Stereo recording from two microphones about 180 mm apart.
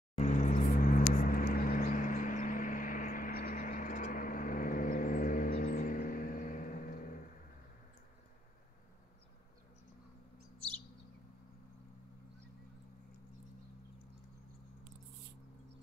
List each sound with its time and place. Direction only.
0.2 s vehicle: 45° left (ahead or behind)